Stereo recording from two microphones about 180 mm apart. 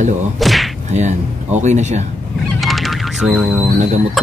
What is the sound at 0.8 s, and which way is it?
Speech, 40° right (ahead or behind).